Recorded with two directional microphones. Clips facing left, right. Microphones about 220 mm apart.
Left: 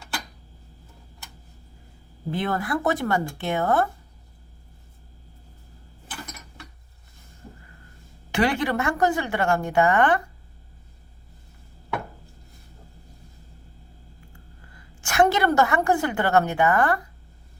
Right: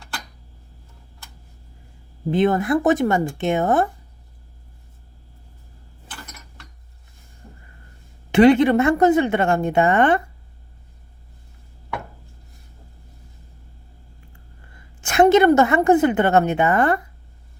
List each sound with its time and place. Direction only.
2.3 s a woman's voice: 20° right (ahead or behind)
8.3 s a woman's voice: 25° right (ahead or behind)
14.8 s a woman's voice: 25° right (ahead or behind)